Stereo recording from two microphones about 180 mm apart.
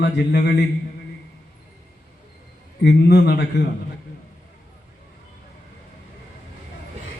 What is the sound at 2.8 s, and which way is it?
Speech, 65° left (ahead or behind).